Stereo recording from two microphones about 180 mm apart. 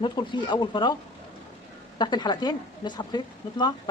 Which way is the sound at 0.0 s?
25° left (ahead or behind).